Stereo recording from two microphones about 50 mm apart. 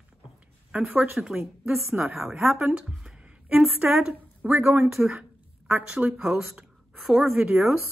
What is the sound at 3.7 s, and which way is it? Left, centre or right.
A woman's voice, right.